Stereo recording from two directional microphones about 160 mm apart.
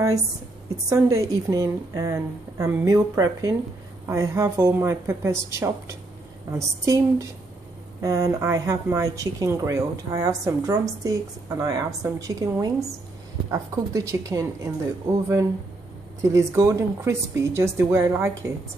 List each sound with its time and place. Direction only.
0.8 s a woman's voice: 20° right (ahead or behind)